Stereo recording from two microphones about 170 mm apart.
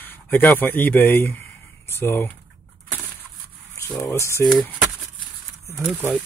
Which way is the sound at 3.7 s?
20° left (ahead or behind).